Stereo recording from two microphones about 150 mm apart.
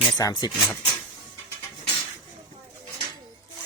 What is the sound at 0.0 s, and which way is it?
Speech, 25° left (ahead or behind).